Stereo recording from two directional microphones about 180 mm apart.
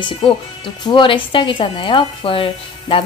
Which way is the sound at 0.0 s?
30° left (ahead or behind).